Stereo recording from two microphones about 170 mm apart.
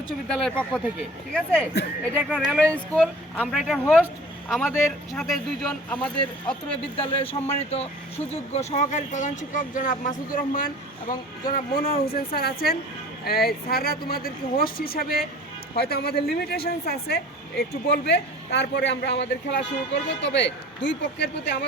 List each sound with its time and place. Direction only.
0.3 s speech: centre (ahead or behind)
1.7 s speech: 80° left
2.1 s speech: 5° right (ahead or behind)
6.4 s a woman's voice: 30° left (ahead or behind); by 21.6 s 90° left